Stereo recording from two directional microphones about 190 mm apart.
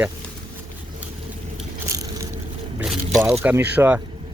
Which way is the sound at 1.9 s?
15° right (ahead or behind).